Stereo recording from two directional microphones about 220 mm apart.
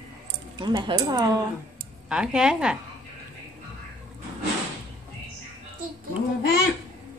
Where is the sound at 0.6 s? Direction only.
20° right (ahead or behind).